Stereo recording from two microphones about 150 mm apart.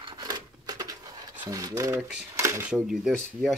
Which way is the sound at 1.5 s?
25° right (ahead or behind).